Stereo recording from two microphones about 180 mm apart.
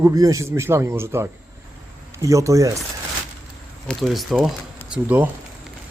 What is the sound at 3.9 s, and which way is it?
Speech, centre (ahead or behind).